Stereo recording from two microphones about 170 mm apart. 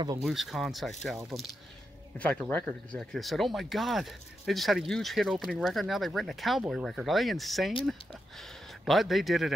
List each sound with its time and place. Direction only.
0.2 s speech: centre (ahead or behind)